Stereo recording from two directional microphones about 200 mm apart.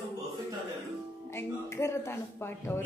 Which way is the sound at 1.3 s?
15° left (ahead or behind).